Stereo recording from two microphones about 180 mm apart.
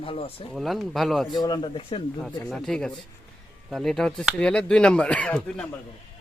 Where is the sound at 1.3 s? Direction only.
25° left (ahead or behind).